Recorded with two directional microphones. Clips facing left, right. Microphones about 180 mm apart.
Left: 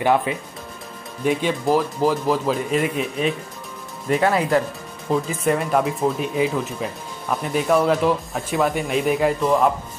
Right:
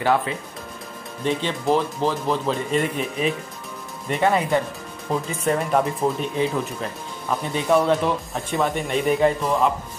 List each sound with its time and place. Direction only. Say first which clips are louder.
0.0 s speech: left 2 dB; 15° left (ahead or behind); by 9.6 s centre (ahead or behind)